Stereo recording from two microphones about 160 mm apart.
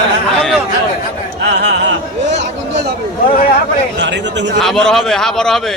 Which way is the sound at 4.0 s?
90° right.